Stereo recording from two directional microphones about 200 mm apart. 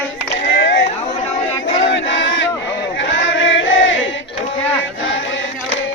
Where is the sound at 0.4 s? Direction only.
65° left (ahead or behind).